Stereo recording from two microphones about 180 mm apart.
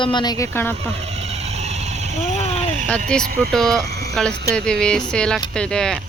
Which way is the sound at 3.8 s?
65° right (ahead or behind).